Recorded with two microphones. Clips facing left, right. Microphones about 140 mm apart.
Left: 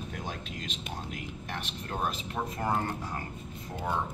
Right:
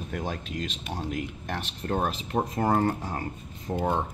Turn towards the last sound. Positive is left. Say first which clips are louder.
# right 8 dB
turn(degrees=-40)  # may be behind; listen again after turning